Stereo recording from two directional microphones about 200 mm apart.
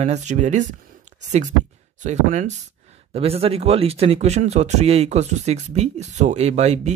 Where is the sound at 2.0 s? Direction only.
35° right (ahead or behind).